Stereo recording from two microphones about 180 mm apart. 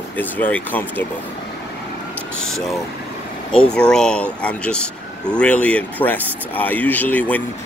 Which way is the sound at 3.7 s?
5° left (ahead or behind).